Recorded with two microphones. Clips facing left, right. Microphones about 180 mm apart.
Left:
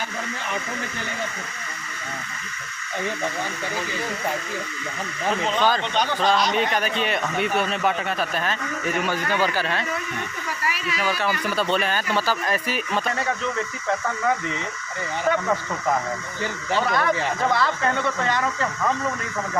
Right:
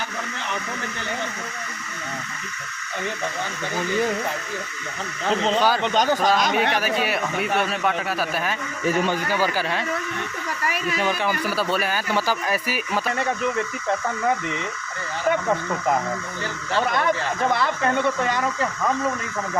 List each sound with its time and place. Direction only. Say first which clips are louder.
5.5 s speech: left 1 dB; 10° right (ahead or behind)
5.8 s speech: right 3 dB; 40° right (ahead or behind)
6.7 s speech: right 1 dB; 5° right (ahead or behind)
8.8 s a man's voice: right 5 dB; 35° right (ahead or behind)
9.1 s speech: even; 10° right (ahead or behind)
11.0 s speech: even; 20° right (ahead or behind)
11.4 s speech: left 1 dB; 5° right (ahead or behind)
17.5 s speech: right 1 dB; 20° right (ahead or behind)